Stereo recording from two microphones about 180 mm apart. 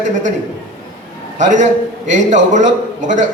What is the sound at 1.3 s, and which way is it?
A man's voice, 45° right (ahead or behind).